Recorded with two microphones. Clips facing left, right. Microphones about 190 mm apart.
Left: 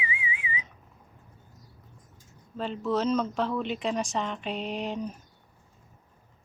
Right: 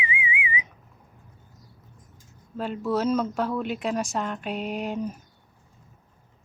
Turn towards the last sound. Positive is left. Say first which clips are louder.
# right 3 dB
turn(degrees=-5)  # may be behind; listen again after turning